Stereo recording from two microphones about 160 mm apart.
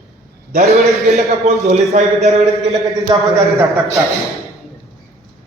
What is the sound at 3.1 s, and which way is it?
Speech, 25° right (ahead or behind).